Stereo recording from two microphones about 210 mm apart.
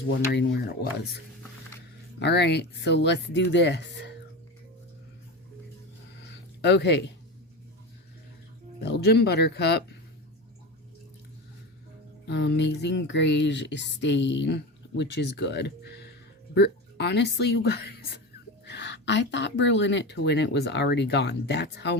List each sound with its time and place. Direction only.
0.3 s speech: 50° left (ahead or behind)
2.1 s music: 55° left (ahead or behind)
6.2 s a sound: 55° left (ahead or behind)
8.8 s speech: 50° left (ahead or behind)
12.3 s music: 55° left (ahead or behind)
16.6 s speech: 50° left (ahead or behind)